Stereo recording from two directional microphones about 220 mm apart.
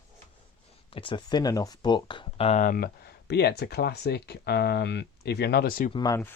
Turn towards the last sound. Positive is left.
turn(degrees=15)  # may be behind; listen again after turning